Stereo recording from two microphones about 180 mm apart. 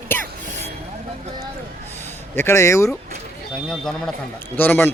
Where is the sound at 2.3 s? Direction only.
15° left (ahead or behind).